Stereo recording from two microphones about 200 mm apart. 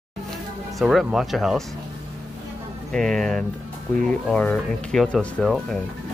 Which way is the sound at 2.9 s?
5° left (ahead or behind).